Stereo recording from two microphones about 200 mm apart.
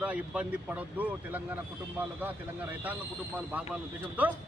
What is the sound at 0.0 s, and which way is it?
Speech, 5° right (ahead or behind).